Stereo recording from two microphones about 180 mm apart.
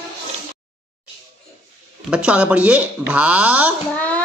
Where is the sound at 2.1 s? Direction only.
5° right (ahead or behind).